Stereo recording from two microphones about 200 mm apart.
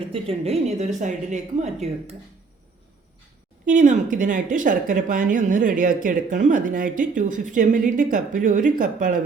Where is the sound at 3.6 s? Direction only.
40° right (ahead or behind).